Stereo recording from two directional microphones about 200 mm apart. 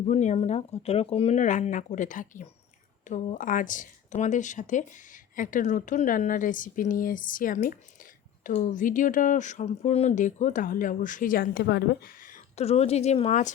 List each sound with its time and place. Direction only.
0.0 s speech: 35° left (ahead or behind)
12.5 s speech: 30° left (ahead or behind)